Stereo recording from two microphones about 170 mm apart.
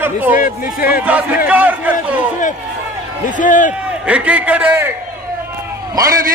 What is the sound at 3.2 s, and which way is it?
Speech, 50° left (ahead or behind).